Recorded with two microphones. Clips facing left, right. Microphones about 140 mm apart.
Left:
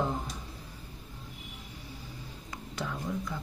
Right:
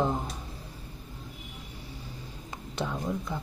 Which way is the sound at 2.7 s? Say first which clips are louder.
Right 3 dB; 25° right (ahead or behind).